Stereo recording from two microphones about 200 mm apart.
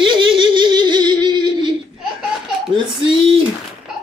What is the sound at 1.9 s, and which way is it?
Laughter, centre (ahead or behind).